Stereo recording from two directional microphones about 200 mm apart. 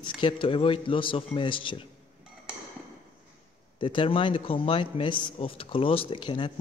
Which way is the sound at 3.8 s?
25° left (ahead or behind).